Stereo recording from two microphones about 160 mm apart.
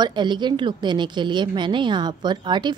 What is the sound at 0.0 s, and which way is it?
A woman's voice, 30° right (ahead or behind).